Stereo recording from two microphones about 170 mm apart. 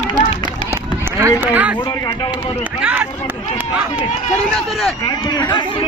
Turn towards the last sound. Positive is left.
turn(degrees=25)  # may be behind; listen again after turning